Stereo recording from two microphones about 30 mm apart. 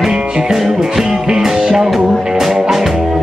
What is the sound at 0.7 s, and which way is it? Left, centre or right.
Music, centre.